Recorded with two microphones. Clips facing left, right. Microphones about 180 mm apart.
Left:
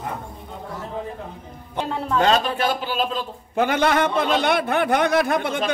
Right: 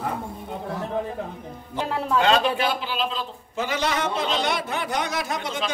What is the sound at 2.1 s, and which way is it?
Speech, 45° left (ahead or behind).